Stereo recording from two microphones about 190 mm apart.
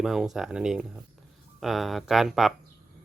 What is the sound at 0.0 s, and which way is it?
Speech, centre (ahead or behind).